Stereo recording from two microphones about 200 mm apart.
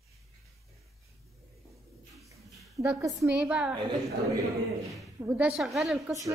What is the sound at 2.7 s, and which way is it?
Speech, 15° right (ahead or behind).